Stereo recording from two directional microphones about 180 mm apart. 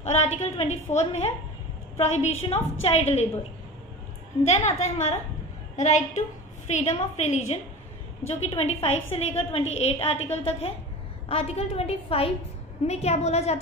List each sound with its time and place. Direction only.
0.0 s a woman's voice: 40° left (ahead or behind)
4.5 s a woman's voice: 40° left (ahead or behind)